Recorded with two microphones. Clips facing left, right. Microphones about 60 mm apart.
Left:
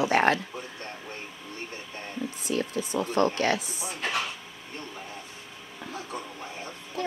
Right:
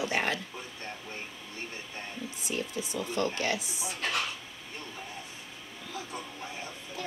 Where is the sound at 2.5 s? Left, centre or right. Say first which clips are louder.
Left 6 dB; left.